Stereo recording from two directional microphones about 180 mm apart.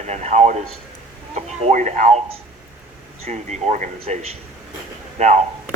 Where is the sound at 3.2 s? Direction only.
40° right (ahead or behind).